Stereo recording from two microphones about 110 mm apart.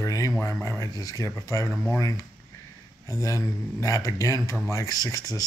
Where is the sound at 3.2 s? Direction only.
30° left (ahead or behind).